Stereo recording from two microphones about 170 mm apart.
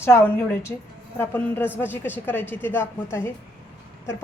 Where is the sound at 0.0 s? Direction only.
15° left (ahead or behind).